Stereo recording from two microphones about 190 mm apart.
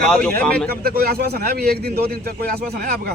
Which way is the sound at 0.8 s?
55° right (ahead or behind).